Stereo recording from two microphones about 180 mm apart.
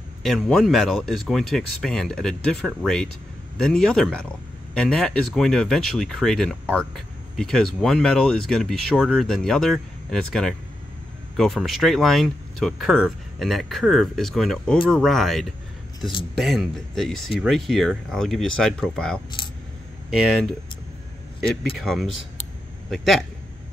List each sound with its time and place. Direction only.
0.2 s speech: centre (ahead or behind)
19.4 s coin: 30° left (ahead or behind)
20.1 s speech: centre (ahead or behind)
21.7 s speech: centre (ahead or behind)